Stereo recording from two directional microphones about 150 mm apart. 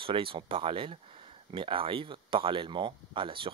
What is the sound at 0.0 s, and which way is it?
Speech, 35° right (ahead or behind).